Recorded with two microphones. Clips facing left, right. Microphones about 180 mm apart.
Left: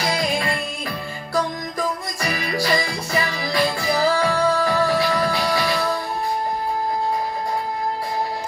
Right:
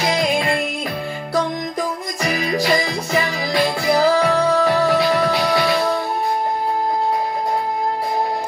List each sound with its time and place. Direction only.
2.2 s music: 20° right (ahead or behind)